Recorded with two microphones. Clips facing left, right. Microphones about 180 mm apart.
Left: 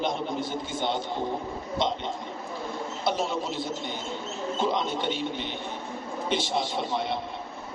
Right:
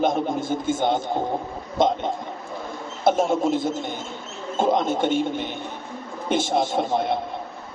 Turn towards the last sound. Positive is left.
turn(degrees=-50)  # may be behind; listen again after turning